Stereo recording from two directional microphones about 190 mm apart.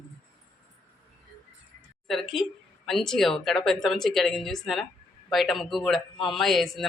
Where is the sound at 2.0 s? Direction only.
Centre (ahead or behind).